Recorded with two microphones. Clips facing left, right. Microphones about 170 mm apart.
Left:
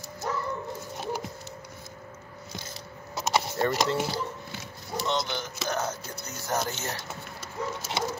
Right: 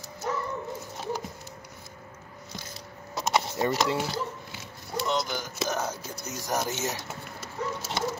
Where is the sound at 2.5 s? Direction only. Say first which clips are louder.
Left 1 dB; 5° left (ahead or behind).